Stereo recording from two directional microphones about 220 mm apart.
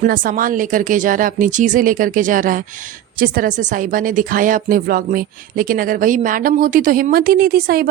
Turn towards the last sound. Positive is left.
turn(degrees=-45)  # may be behind; listen again after turning